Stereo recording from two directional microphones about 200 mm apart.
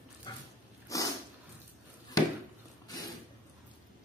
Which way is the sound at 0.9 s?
15° left (ahead or behind).